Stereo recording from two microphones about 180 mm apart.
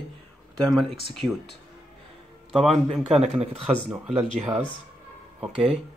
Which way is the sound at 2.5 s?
Centre (ahead or behind).